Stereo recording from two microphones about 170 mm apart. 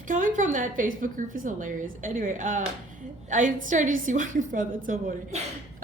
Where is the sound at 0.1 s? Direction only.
50° right (ahead or behind).